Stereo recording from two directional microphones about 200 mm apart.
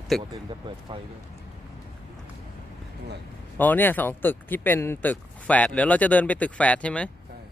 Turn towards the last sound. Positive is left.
turn(degrees=5)  # may be behind; listen again after turning